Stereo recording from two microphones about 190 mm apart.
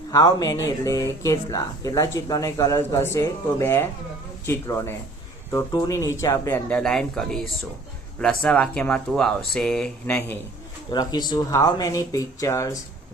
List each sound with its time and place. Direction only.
0.1 s speech: 20° left (ahead or behind)
10.9 s speech: 20° left (ahead or behind)